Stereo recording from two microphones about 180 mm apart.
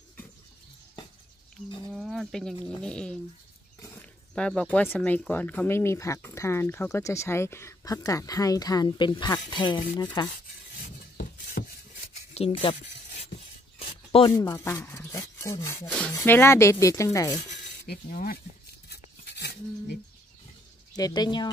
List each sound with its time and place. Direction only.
2.0 s speech: centre (ahead or behind); by 10.3 s 25° left (ahead or behind)
10.8 s a sound: 50° left (ahead or behind)
12.4 s speech: 35° left (ahead or behind)
13.7 s speech: 30° left (ahead or behind)
17.8 s speech: 55° left (ahead or behind)
18.9 s a sound: 65° left (ahead or behind)
20.9 s speech: 20° left (ahead or behind)